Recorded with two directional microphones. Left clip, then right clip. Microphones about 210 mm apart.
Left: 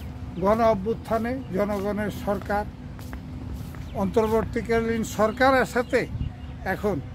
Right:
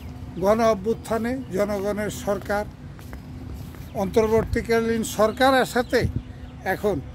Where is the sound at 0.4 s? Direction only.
55° right (ahead or behind).